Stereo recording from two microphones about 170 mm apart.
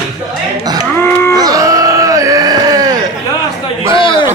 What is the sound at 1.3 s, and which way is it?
Groan, 20° right (ahead or behind).